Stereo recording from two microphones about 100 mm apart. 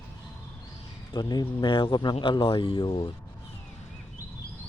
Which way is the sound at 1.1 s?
40° left (ahead or behind).